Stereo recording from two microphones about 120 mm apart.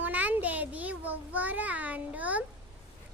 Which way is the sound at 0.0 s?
15° right (ahead or behind).